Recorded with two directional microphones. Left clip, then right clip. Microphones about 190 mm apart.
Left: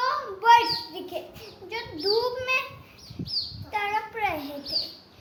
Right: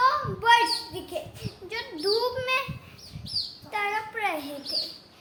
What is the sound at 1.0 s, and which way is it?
Bird, 10° right (ahead or behind).